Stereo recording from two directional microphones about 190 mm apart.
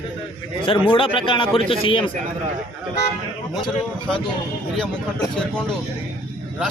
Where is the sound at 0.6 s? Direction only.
25° left (ahead or behind).